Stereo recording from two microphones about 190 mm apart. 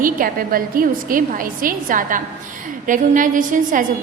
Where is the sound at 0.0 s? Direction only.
50° right (ahead or behind).